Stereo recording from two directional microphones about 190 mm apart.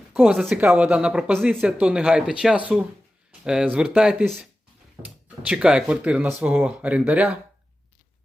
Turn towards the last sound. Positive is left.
turn(degrees=-5)  # may be behind; listen again after turning